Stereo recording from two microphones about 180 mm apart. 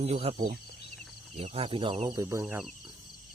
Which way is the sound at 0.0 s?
35° right (ahead or behind).